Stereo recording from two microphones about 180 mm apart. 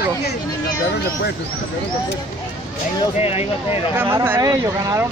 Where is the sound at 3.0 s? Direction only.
35° left (ahead or behind).